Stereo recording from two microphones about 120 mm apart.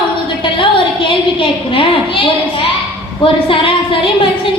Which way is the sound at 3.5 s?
45° left (ahead or behind).